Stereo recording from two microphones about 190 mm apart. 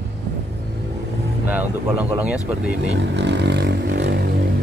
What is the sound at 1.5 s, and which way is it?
Speech, 10° right (ahead or behind).